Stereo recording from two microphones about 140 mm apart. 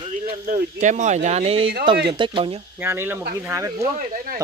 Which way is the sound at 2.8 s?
15° right (ahead or behind).